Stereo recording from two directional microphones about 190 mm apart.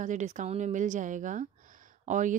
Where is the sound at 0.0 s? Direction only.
40° right (ahead or behind).